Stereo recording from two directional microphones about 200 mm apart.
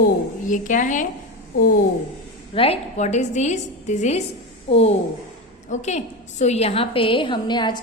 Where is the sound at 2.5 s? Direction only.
30° left (ahead or behind).